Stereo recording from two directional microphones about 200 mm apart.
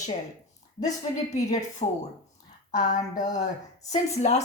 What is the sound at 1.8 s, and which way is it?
Speech, 35° left (ahead or behind).